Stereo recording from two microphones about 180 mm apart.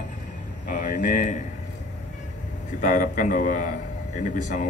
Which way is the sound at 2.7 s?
45° left (ahead or behind).